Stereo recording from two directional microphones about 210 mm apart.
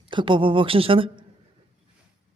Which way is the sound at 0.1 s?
25° right (ahead or behind).